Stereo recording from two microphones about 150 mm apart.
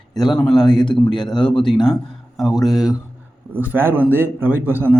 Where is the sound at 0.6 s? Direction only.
30° left (ahead or behind).